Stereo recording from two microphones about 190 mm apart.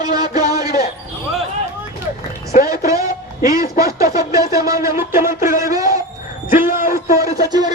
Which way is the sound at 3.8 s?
15° right (ahead or behind).